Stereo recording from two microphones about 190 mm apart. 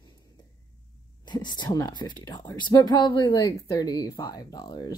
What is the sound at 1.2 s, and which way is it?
A woman's voice, 25° left (ahead or behind).